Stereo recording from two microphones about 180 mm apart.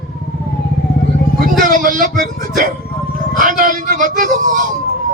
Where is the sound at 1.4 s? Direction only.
50° right (ahead or behind).